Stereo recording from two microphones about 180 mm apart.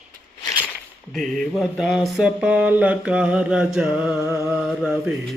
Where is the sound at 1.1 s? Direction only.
Centre (ahead or behind).